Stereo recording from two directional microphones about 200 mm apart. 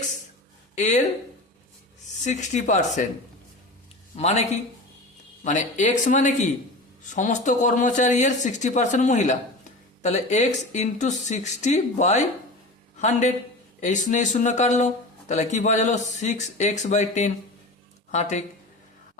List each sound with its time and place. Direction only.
0.8 s speech: 35° left (ahead or behind)
2.2 s speech: 35° left (ahead or behind)
4.1 s speech: 35° left (ahead or behind)